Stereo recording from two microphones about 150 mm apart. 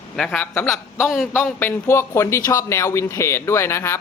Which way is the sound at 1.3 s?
15° left (ahead or behind).